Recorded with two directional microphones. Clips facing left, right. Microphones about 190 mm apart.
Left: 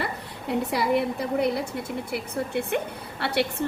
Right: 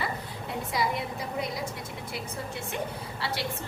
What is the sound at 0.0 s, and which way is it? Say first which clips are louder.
A woman's voice: left 3 dB; 65° left (ahead or behind).